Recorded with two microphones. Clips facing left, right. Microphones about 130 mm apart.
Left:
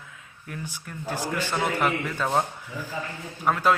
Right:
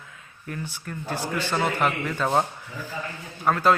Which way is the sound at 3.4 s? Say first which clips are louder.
Right 2 dB; 10° left (ahead or behind).